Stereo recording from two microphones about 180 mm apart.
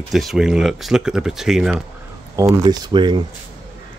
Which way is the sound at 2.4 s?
20° right (ahead or behind).